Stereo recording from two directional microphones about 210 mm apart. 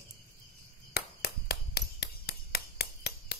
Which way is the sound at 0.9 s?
50° left (ahead or behind).